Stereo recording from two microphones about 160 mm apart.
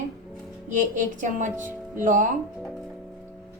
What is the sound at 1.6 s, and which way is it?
Music, 15° right (ahead or behind).